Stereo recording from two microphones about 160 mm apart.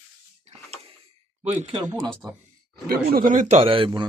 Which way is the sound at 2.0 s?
Centre (ahead or behind).